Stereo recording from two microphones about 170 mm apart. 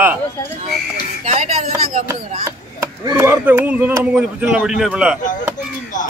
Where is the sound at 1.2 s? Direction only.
40° right (ahead or behind).